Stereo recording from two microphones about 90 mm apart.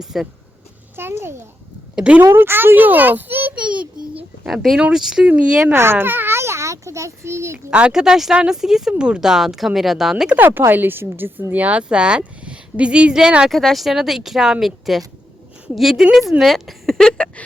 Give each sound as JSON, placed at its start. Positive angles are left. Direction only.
{"t": 0.0, "sound": "speech", "side_deg": -5}
{"t": 0.9, "sound": "a child's voice", "side_deg": -25}
{"t": 2.0, "sound": "speech", "side_deg": -10}
{"t": 2.2, "sound": "a child's voice", "side_deg": -25}
{"t": 4.4, "sound": "a child's voice", "side_deg": 0}
{"t": 7.7, "sound": "speech", "side_deg": -15}
{"t": 10.3, "sound": "a woman's voice", "side_deg": -20}